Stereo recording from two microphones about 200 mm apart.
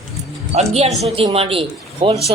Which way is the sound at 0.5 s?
30° right (ahead or behind).